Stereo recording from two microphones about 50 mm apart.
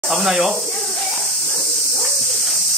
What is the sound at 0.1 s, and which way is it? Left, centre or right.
Speech, centre.